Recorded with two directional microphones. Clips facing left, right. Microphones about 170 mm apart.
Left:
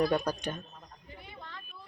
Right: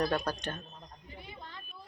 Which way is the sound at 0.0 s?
10° left (ahead or behind).